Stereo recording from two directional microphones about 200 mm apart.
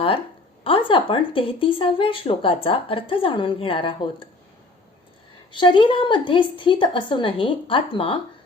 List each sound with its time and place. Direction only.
0.6 s speech: 25° left (ahead or behind)
5.5 s speech: 25° left (ahead or behind)